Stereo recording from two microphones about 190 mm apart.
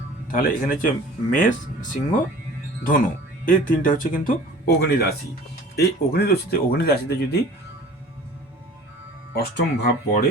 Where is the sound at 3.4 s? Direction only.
45° left (ahead or behind).